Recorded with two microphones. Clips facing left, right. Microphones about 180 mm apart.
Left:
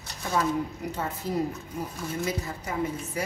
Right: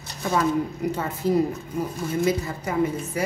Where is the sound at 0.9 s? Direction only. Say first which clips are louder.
Right 7 dB; 90° right.